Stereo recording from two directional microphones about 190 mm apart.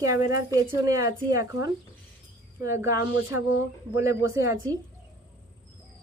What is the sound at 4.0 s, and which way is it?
Speech, 15° right (ahead or behind).